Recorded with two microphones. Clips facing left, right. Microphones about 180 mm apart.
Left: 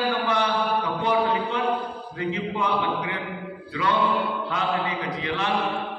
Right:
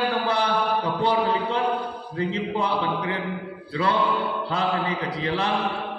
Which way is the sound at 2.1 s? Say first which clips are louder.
Right 2 dB; 30° right (ahead or behind).